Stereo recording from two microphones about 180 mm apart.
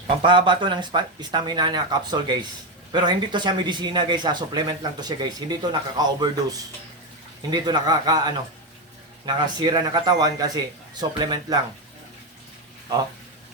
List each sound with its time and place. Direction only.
0.2 s speech: 25° right (ahead or behind)